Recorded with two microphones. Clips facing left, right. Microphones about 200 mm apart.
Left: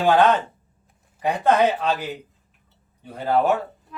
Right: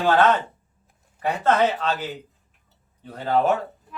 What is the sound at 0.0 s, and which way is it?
Mantra, 15° left (ahead or behind).